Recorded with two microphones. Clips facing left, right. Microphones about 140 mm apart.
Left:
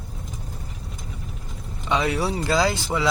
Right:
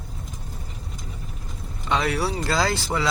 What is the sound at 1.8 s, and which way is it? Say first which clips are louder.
Vehicle: left 1 dB; 15° left (ahead or behind).